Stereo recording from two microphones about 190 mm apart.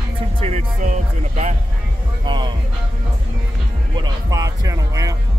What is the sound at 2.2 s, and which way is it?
Music, 25° right (ahead or behind).